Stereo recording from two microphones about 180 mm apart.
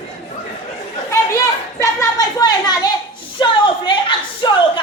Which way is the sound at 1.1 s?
15° left (ahead or behind).